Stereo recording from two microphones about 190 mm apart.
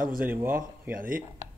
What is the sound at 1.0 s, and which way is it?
Speech, 45° right (ahead or behind).